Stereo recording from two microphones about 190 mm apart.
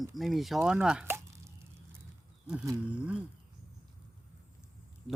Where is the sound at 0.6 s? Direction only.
5° right (ahead or behind).